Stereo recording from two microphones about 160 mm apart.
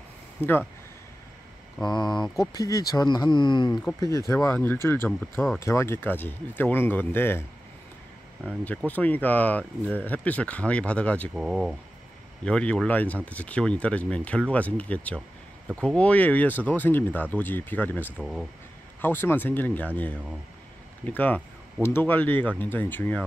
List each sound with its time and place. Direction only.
1.9 s speech: 25° left (ahead or behind)
4.3 s speech: 15° left (ahead or behind)
8.6 s speech: 10° left (ahead or behind)
11.3 s speech: 5° right (ahead or behind)
18.2 s speech: centre (ahead or behind)
18.9 s speech: 15° left (ahead or behind)
21.0 s speech: 10° left (ahead or behind)